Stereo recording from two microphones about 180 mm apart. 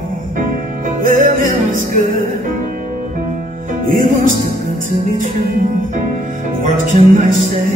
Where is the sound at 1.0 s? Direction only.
50° right (ahead or behind).